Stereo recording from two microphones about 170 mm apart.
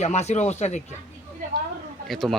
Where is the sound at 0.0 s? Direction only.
40° left (ahead or behind).